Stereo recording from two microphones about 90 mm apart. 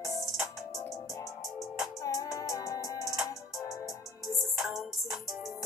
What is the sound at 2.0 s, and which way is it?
Music, 40° left (ahead or behind).